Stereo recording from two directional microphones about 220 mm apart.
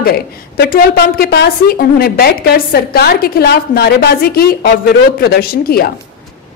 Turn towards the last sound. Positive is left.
turn(degrees=45)  # may be behind; listen again after turning